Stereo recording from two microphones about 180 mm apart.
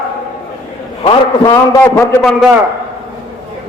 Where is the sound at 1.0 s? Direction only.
20° left (ahead or behind).